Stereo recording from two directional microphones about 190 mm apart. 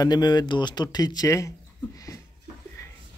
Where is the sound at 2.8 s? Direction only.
15° left (ahead or behind).